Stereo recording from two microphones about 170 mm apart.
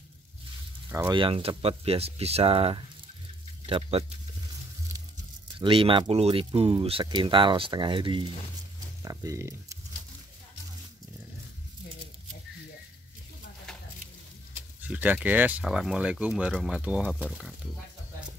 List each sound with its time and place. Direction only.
0.8 s speech: 15° right (ahead or behind)
1.1 s speech: 30° right (ahead or behind)
5.6 s speech: 30° right (ahead or behind)
14.8 s speech: 10° right (ahead or behind)